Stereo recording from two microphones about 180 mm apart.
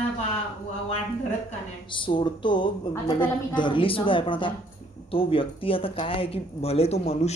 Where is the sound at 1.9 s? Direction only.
25° left (ahead or behind).